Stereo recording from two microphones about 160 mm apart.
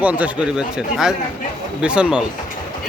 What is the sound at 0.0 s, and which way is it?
Speech, 10° right (ahead or behind).